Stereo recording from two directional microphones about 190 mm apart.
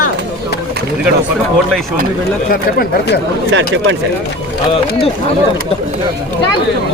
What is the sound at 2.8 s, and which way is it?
Speech, 60° left (ahead or behind).